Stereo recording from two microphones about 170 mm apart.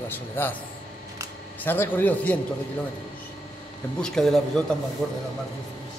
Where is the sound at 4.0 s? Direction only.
Centre (ahead or behind).